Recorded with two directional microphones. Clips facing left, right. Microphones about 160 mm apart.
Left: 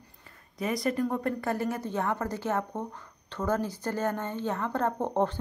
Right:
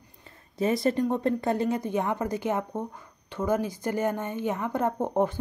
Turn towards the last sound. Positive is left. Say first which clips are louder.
# right 2 dB
turn(degrees=-10)  # may be behind; listen again after turning